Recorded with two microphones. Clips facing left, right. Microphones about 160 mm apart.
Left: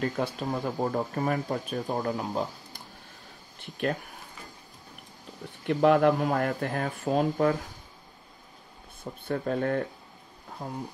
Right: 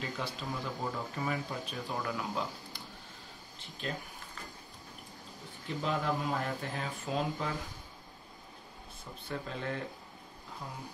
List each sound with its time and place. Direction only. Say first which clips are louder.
0.0 s speech: left 9 dB; 55° left (ahead or behind)
3.5 s speech: left 11 dB; 60° left (ahead or behind)
5.7 s speech: left 12 dB; 65° left (ahead or behind); by 7.5 s 50° left (ahead or behind)
9.3 s speech: left 10 dB; 50° left (ahead or behind)